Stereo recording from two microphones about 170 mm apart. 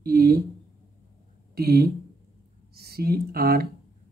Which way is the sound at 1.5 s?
65° right (ahead or behind).